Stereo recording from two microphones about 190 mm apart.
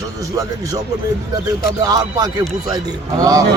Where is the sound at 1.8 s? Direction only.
20° right (ahead or behind).